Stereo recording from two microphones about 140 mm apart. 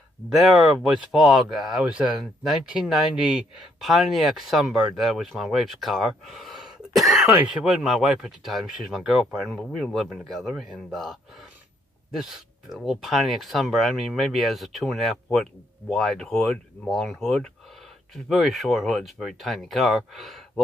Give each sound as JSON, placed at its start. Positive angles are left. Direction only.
{"t": 0.3, "sound": "speech", "side_deg": 0}